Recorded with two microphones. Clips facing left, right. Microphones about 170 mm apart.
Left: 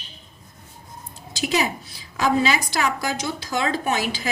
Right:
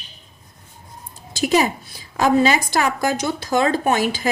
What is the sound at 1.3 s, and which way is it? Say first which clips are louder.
A woman's voice: right 5 dB; 45° right (ahead or behind).